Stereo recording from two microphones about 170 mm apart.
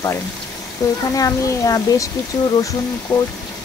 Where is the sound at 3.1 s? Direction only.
25° left (ahead or behind).